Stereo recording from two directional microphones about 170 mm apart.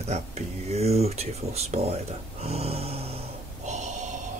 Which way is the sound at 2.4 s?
35° right (ahead or behind).